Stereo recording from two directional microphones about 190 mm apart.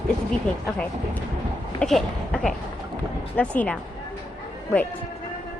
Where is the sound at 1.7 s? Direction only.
5° left (ahead or behind).